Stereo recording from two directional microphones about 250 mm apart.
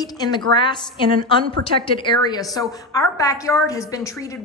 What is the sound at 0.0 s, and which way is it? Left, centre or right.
Speech, centre.